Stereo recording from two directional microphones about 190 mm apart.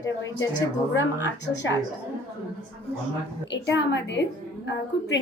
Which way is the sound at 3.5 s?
70° left (ahead or behind).